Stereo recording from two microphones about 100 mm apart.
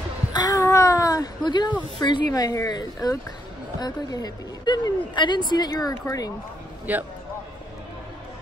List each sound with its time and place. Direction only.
0.3 s a sound: 40° left (ahead or behind)
2.0 s a woman's voice: 45° left (ahead or behind)
6.9 s a man's voice: 15° right (ahead or behind)